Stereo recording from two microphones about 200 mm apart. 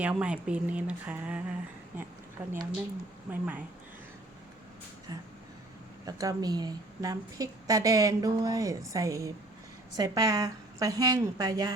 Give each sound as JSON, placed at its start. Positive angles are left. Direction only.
{"t": 0.0, "sound": "a woman's voice", "side_deg": -5}
{"t": 6.1, "sound": "a woman's voice", "side_deg": -15}